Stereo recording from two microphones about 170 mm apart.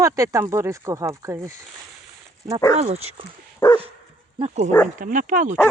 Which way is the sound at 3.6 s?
15° left (ahead or behind).